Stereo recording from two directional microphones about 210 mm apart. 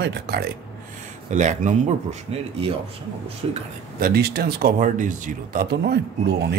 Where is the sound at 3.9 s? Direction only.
45° right (ahead or behind).